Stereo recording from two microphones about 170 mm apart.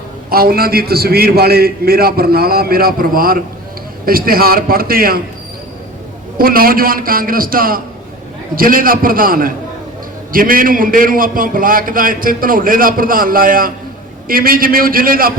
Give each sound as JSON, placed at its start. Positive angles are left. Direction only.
{"t": 0.3, "sound": "a man's voice", "side_deg": -60}
{"t": 6.3, "sound": "a man's voice", "side_deg": -60}